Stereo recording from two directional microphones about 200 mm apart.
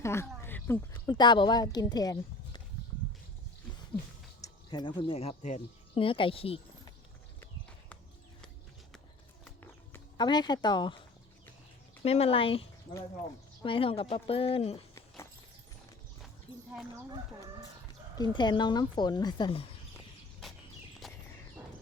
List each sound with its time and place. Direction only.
0.0 s a sound: 15° left (ahead or behind)
1.0 s a woman's voice: 20° left (ahead or behind)
4.4 s speech: 20° left (ahead or behind)
10.2 s a woman's voice: 20° left (ahead or behind)
12.0 s a woman's voice: 30° left (ahead or behind)
18.2 s a woman's voice: 20° left (ahead or behind)
20.4 s a sound: centre (ahead or behind)
21.0 s walk: centre (ahead or behind)